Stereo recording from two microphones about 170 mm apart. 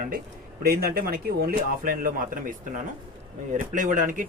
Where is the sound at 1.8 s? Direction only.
55° right (ahead or behind).